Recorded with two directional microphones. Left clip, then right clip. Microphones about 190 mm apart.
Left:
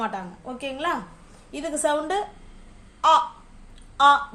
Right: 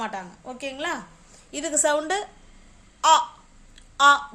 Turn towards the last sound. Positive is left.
turn(degrees=-30)  # may be behind; listen again after turning